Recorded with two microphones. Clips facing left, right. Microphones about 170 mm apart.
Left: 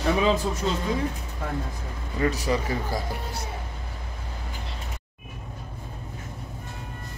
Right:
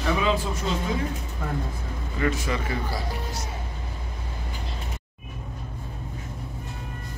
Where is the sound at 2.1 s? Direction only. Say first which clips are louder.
Left 2 dB; 35° left (ahead or behind).